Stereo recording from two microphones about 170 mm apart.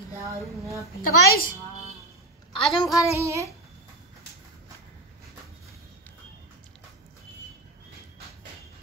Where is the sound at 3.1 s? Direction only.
15° right (ahead or behind).